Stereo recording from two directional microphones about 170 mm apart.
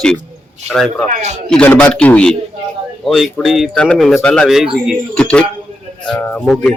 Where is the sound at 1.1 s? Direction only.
45° right (ahead or behind).